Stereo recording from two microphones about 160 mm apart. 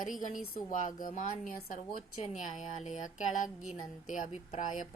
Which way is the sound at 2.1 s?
45° left (ahead or behind).